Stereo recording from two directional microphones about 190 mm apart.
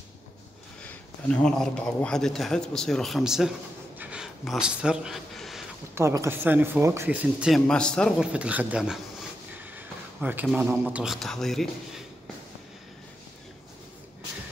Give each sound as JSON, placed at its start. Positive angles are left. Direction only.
{"t": 1.3, "sound": "speech", "side_deg": 5}
{"t": 4.0, "sound": "a sound", "side_deg": -5}
{"t": 5.9, "sound": "speech", "side_deg": -15}
{"t": 8.3, "sound": "a man's voice", "side_deg": -5}